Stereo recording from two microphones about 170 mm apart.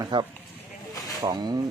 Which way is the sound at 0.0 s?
25° right (ahead or behind).